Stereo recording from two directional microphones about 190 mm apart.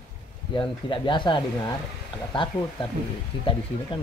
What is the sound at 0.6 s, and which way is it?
Speech, 25° left (ahead or behind).